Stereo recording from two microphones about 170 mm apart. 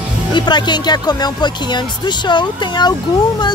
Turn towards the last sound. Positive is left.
turn(degrees=25)  # may be behind; listen again after turning